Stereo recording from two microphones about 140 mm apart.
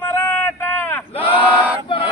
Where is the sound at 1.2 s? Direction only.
10° right (ahead or behind).